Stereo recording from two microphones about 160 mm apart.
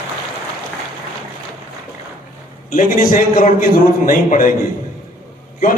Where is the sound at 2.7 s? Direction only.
60° left (ahead or behind).